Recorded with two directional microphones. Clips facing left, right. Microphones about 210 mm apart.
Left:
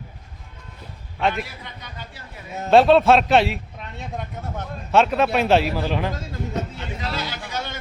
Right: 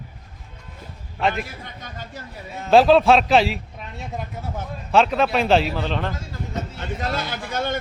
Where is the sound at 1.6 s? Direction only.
45° right (ahead or behind).